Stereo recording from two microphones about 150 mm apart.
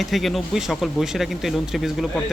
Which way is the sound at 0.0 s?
Centre (ahead or behind).